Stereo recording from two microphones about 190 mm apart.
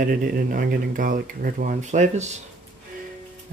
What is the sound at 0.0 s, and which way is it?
Speech, 50° right (ahead or behind).